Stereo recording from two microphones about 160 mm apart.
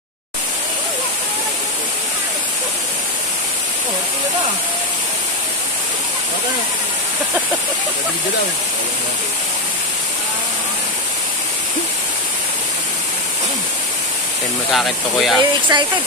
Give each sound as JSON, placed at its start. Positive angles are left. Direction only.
{"t": 14.7, "sound": "speech", "side_deg": 0}
{"t": 15.7, "sound": "speech", "side_deg": -30}